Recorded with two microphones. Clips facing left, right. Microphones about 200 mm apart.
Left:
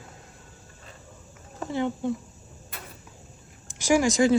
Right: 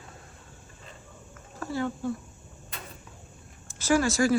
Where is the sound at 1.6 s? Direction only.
20° left (ahead or behind).